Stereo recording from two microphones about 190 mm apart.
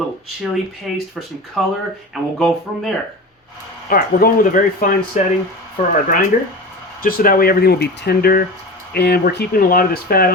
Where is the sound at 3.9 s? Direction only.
50° left (ahead or behind).